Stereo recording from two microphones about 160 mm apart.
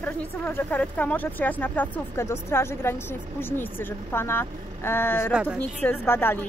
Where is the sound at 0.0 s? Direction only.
10° left (ahead or behind).